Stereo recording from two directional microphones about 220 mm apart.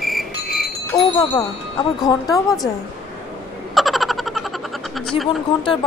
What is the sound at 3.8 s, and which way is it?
Frog, centre (ahead or behind).